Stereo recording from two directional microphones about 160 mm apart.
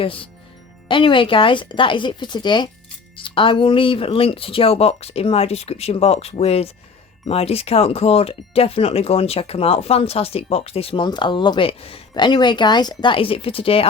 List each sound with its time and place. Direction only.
0.0 s speech: 35° left (ahead or behind)